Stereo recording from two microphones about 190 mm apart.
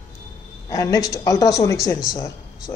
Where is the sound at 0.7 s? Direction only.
15° left (ahead or behind).